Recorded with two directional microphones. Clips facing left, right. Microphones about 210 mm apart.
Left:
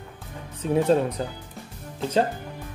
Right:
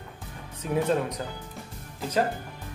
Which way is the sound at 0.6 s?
30° left (ahead or behind).